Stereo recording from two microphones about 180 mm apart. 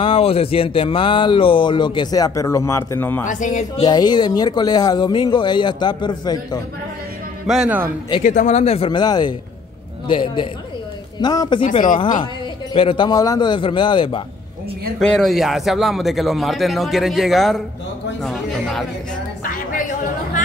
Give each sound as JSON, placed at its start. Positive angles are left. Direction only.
{"t": 0.0, "sound": "speech", "side_deg": 30}
{"t": 3.3, "sound": "speech", "side_deg": 45}
{"t": 3.8, "sound": "speech", "side_deg": 20}
{"t": 7.4, "sound": "speech", "side_deg": -5}
{"t": 8.2, "sound": "speech", "side_deg": 45}
{"t": 12.7, "sound": "speech", "side_deg": 30}
{"t": 15.0, "sound": "a man's voice", "side_deg": 0}